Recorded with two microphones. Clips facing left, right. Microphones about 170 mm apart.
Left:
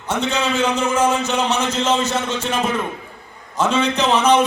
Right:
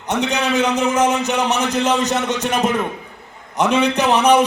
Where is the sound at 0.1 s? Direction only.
15° right (ahead or behind).